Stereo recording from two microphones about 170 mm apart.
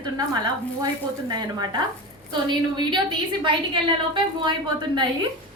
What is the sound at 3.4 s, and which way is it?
A woman's voice, 30° right (ahead or behind).